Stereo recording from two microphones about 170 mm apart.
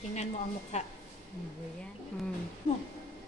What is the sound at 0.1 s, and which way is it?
Speech, 40° left (ahead or behind).